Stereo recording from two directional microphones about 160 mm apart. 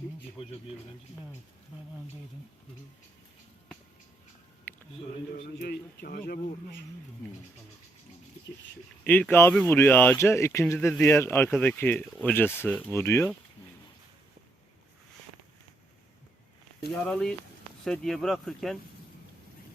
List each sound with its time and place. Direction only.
0.4 s speech: 35° left (ahead or behind)
4.7 s a sound: 10° left (ahead or behind)
5.3 s a man's voice: 80° left
9.0 s speech: 10° left (ahead or behind)
16.9 s speech: 5° left (ahead or behind)